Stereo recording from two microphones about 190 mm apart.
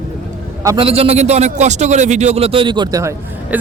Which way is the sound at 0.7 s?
30° right (ahead or behind).